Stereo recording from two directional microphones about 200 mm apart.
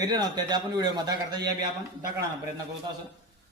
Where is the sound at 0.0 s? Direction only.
20° right (ahead or behind).